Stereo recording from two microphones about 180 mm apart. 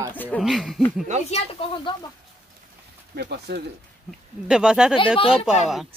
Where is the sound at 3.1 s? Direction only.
65° right (ahead or behind).